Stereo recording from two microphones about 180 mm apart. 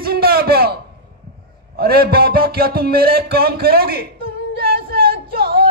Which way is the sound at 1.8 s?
60° right (ahead or behind).